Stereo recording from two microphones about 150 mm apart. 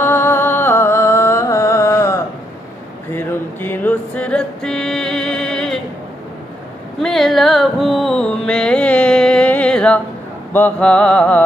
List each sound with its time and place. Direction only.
0.0 s music: 15° left (ahead or behind)
3.1 s a sound: 15° left (ahead or behind)
7.0 s music: centre (ahead or behind)
10.5 s mantra: 10° left (ahead or behind)